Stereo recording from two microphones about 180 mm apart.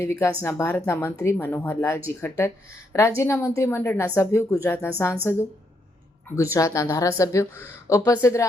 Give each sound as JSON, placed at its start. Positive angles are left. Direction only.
{"t": 0.0, "sound": "speech", "side_deg": 15}
{"t": 6.3, "sound": "speech", "side_deg": 15}